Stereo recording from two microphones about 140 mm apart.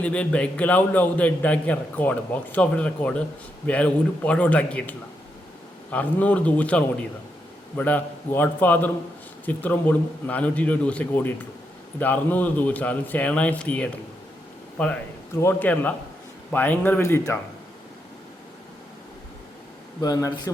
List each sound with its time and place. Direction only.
0.0 s a man's voice: 10° left (ahead or behind)
15.4 s a man's voice: 15° left (ahead or behind)
20.0 s speech: 25° left (ahead or behind)